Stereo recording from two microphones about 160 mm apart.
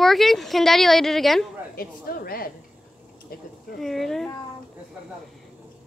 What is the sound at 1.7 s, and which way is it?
Speech, 65° left (ahead or behind).